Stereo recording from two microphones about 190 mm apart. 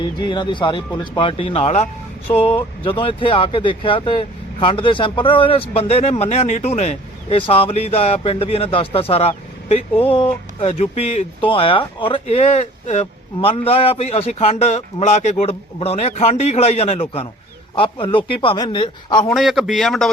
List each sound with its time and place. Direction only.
0.0 s speech: 25° left (ahead or behind)
19.3 s speech: centre (ahead or behind)